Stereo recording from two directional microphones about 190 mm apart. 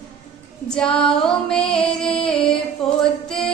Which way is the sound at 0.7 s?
5° left (ahead or behind).